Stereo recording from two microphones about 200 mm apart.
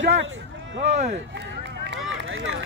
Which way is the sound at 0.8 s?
35° right (ahead or behind).